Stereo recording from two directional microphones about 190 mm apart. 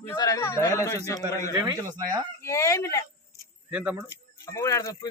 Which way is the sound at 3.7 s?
5° right (ahead or behind).